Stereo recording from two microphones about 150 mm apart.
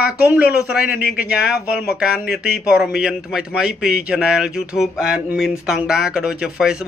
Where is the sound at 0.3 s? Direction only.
5° right (ahead or behind).